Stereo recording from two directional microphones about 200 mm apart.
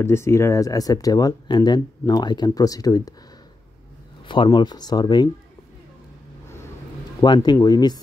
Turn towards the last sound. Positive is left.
turn(degrees=20)  # may be behind; listen again after turning